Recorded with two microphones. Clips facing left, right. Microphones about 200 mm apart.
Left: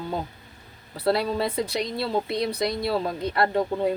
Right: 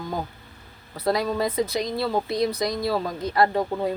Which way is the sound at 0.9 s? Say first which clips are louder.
Even; 30° left (ahead or behind).